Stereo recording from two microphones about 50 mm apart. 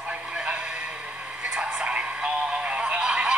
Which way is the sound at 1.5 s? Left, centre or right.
Right.